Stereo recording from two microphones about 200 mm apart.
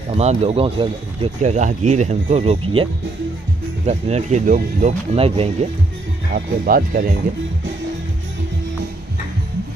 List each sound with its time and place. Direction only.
0.1 s speech: 30° right (ahead or behind)
5.1 s speech: 30° right (ahead or behind)
6.3 s speech: 45° right (ahead or behind)